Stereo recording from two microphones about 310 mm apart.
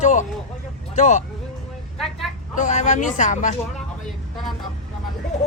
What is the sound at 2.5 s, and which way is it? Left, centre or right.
Speech, left.